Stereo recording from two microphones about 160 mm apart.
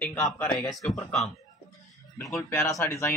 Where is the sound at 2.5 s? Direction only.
15° left (ahead or behind).